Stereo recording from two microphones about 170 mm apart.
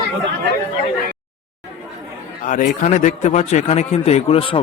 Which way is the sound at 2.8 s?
50° left (ahead or behind).